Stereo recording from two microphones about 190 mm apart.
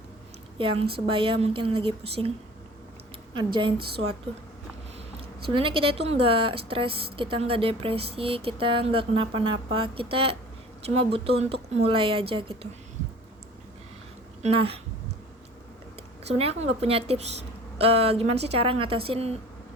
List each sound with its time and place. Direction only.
0.6 s a woman's voice: 30° right (ahead or behind)
3.3 s a woman's voice: 25° right (ahead or behind)
5.5 s a woman's voice: 30° right (ahead or behind)
14.4 s a woman's voice: 30° right (ahead or behind)
16.2 s a woman's voice: 30° right (ahead or behind)